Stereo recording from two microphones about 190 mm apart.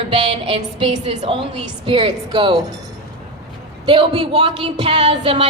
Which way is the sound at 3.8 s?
30° right (ahead or behind).